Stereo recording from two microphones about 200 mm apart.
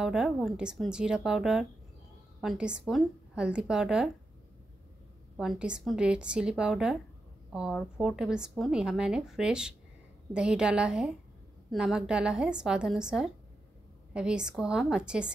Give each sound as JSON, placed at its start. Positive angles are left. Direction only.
{"t": 0.0, "sound": "a woman's voice", "side_deg": 0}
{"t": 5.4, "sound": "a woman's voice", "side_deg": -5}